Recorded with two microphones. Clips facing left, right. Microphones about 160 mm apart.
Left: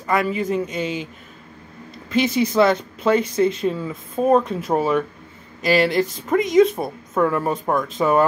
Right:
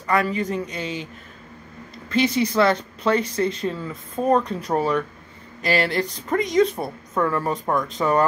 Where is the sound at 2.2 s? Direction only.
25° left (ahead or behind).